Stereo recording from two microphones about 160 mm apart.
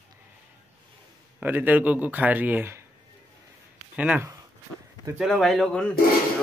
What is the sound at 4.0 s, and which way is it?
Speech, 10° right (ahead or behind).